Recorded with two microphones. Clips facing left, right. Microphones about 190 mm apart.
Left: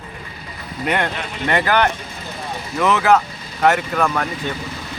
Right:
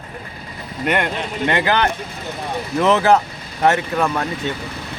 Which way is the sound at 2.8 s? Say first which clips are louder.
Right 1 dB; 30° right (ahead or behind).